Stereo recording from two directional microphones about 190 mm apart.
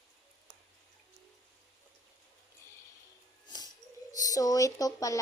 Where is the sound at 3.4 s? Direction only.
20° left (ahead or behind).